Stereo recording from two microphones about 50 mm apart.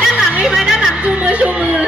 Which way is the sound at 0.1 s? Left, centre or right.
Centre.